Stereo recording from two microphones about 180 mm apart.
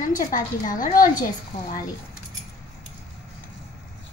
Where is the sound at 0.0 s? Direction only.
50° left (ahead or behind).